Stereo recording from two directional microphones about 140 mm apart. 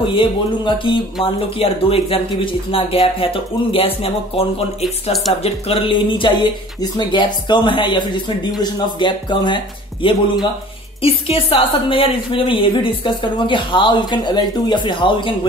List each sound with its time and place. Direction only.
0.0 s speech: 35° left (ahead or behind)
11.0 s speech: 45° left (ahead or behind)